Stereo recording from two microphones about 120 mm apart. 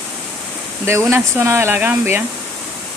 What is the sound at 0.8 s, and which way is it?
Speech, 20° right (ahead or behind).